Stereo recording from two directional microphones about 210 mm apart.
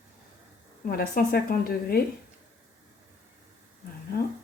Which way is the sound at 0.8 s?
45° left (ahead or behind).